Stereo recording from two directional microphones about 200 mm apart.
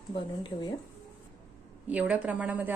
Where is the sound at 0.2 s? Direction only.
25° left (ahead or behind).